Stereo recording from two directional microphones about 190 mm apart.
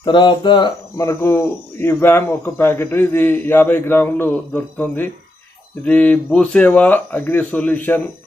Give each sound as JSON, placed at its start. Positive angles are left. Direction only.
{"t": 0.0, "sound": "a man's voice", "side_deg": 25}